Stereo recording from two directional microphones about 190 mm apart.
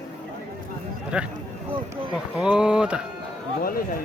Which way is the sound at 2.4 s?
5° right (ahead or behind).